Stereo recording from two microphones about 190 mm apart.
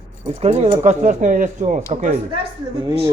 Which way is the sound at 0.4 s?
35° right (ahead or behind).